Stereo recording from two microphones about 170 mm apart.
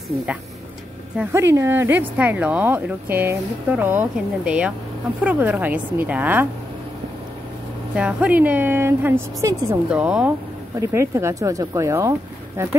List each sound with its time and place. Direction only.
1.3 s speech: 15° right (ahead or behind)
7.9 s speech: 5° right (ahead or behind)
9.8 s speech: 5° right (ahead or behind)